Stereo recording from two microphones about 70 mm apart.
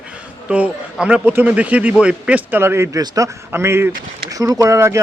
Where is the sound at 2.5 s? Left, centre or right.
Right.